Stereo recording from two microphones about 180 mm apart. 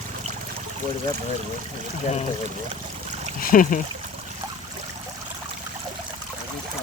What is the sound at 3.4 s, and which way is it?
Speech, 50° left (ahead or behind).